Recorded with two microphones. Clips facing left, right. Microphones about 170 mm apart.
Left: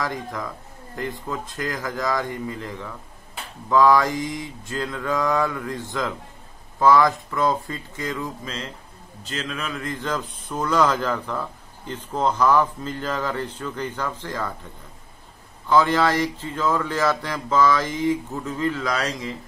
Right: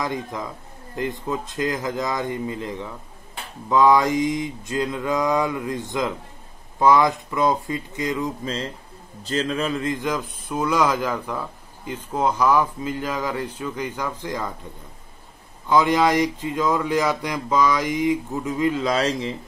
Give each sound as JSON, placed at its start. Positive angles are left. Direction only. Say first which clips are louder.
{"t": 0.0, "sound": "mantra", "louder": "right 1 dB", "side_deg": -20}
{"t": 9.2, "sound": "a man's voice", "louder": "right 7 dB", "side_deg": -35}
{"t": 9.9, "sound": "a man's voice", "louder": "right 2 dB", "side_deg": -10}
{"t": 15.7, "sound": "a man's voice", "louder": "right 1 dB", "side_deg": -15}